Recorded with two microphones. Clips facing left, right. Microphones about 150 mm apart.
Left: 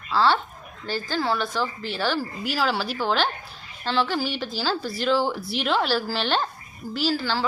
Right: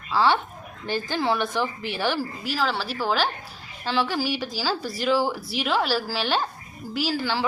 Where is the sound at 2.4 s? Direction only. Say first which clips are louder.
Left 1 dB; centre (ahead or behind).